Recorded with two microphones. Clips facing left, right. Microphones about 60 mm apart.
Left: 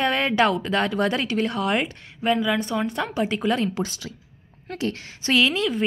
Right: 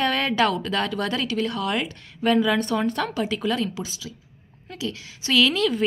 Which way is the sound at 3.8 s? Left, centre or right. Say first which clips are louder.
Left 5 dB; left.